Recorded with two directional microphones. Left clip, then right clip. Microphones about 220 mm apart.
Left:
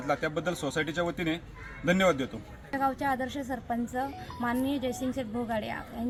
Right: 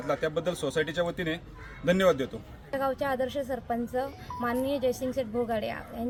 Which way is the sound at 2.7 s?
Centre (ahead or behind).